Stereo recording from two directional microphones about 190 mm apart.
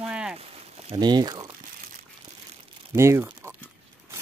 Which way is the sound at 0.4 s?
25° right (ahead or behind).